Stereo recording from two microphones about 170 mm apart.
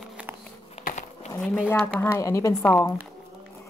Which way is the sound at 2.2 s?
20° left (ahead or behind).